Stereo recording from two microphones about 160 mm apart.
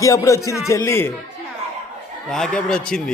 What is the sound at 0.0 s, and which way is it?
A man's voice, 20° left (ahead or behind).